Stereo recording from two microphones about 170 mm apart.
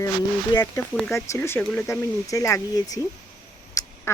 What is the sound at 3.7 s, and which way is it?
Quack, 15° left (ahead or behind).